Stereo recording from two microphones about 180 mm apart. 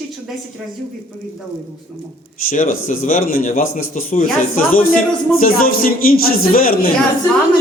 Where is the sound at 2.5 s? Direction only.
45° left (ahead or behind).